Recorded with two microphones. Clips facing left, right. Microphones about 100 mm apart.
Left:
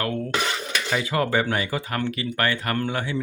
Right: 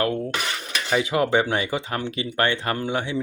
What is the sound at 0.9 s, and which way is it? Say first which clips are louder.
Speech: right 3 dB; 20° right (ahead or behind).